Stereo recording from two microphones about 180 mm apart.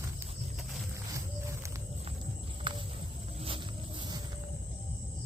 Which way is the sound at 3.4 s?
30° right (ahead or behind).